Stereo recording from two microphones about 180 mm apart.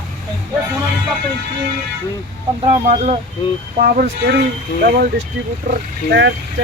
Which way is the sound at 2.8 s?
40° right (ahead or behind).